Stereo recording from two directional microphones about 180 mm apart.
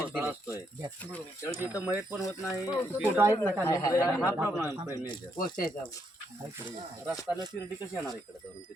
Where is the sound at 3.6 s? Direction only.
15° left (ahead or behind).